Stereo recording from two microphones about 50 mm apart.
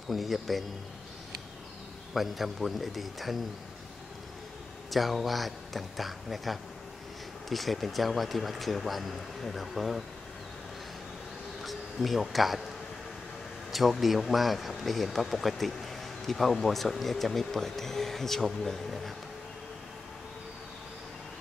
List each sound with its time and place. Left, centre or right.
0.1 s speech: centre
2.1 s speech: centre
4.9 s speech: centre
11.6 s speech: centre
13.7 s speech: centre